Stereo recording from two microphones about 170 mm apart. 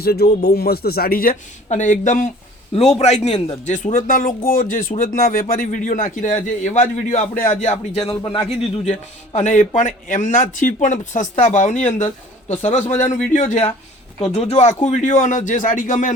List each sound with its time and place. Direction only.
0.0 s a man's voice: 65° left (ahead or behind)
8.0 s a man's voice: 25° left (ahead or behind); by 16.1 s 50° left (ahead or behind)